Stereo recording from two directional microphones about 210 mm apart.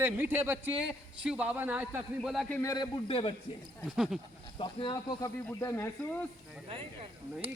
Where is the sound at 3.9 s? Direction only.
Centre (ahead or behind).